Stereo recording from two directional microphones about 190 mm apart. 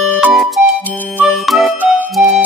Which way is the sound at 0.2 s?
Centre (ahead or behind).